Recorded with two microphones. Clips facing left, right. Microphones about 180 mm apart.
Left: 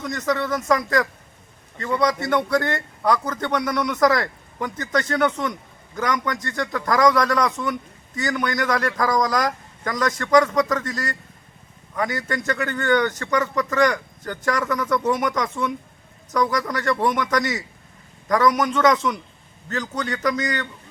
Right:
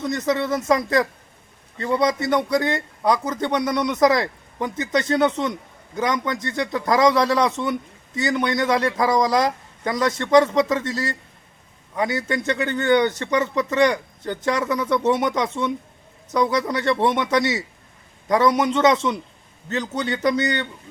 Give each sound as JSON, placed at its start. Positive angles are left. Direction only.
{"t": 0.0, "sound": "a man's voice", "side_deg": -20}